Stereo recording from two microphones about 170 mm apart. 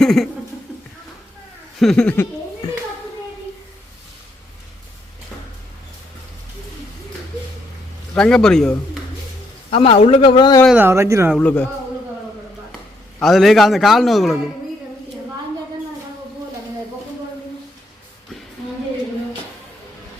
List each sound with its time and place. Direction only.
0.0 s speech: centre (ahead or behind)
1.8 s a man's voice: 5° left (ahead or behind)
8.1 s a man's voice: 5° left (ahead or behind)
9.6 s a man's voice: 35° left (ahead or behind)
10.7 s speech: 15° right (ahead or behind)
11.3 s a man's voice: 10° left (ahead or behind)
13.2 s a man's voice: centre (ahead or behind)